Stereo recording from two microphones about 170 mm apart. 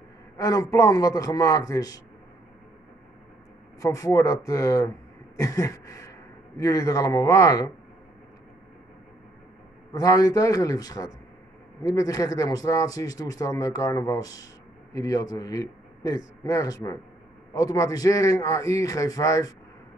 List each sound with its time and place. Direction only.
0.4 s speech: 20° left (ahead or behind)
3.8 s a man's voice: 20° left (ahead or behind)
9.9 s speech: 20° left (ahead or behind)